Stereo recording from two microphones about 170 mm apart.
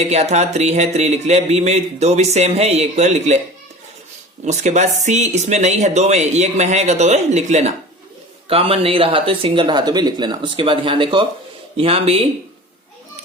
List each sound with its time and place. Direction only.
0.0 s speech: 40° right (ahead or behind)
4.4 s speech: 45° right (ahead or behind)